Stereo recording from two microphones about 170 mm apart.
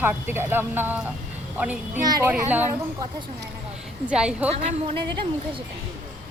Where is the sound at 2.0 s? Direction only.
25° right (ahead or behind).